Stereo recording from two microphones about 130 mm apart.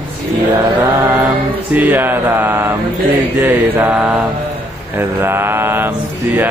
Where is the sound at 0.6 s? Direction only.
20° right (ahead or behind).